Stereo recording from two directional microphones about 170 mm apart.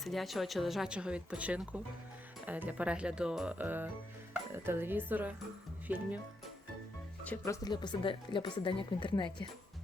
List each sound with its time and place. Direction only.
0.0 s speech: centre (ahead or behind)
7.3 s speech: 15° left (ahead or behind)